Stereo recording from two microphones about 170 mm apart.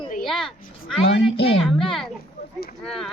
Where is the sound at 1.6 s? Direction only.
Centre (ahead or behind).